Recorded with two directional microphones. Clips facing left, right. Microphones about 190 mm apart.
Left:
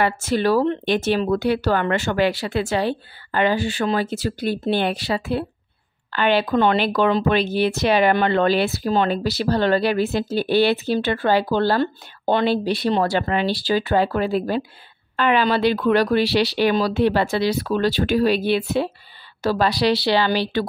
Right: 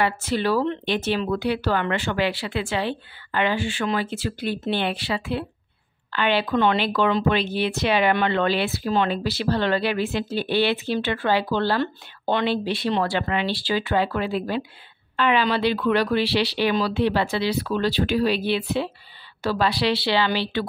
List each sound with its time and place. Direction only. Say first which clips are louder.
0.0 s speech: left 3 dB; 45° left (ahead or behind)